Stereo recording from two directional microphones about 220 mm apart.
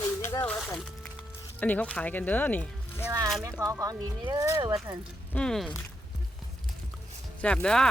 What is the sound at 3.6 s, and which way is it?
Speech, 15° right (ahead or behind).